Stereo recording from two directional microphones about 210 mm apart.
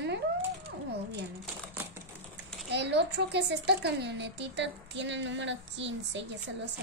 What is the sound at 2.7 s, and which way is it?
A woman's voice, 55° right (ahead or behind).